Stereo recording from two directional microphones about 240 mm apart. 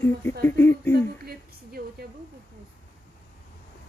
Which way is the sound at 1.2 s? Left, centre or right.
Right.